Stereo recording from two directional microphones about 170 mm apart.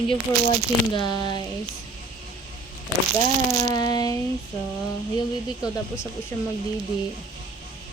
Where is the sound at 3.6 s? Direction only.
20° left (ahead or behind).